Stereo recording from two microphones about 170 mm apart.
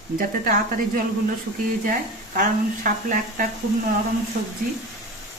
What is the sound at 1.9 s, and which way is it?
Speech, 55° right (ahead or behind).